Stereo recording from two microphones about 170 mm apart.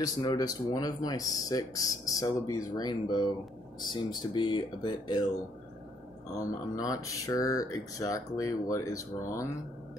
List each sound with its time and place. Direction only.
0.0 s speech: 20° left (ahead or behind)
6.3 s speech: 20° left (ahead or behind)